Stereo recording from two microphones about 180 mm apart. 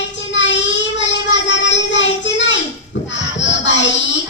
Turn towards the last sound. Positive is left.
turn(degrees=90)